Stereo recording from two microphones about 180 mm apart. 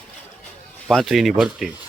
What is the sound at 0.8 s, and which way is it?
Speech, centre (ahead or behind).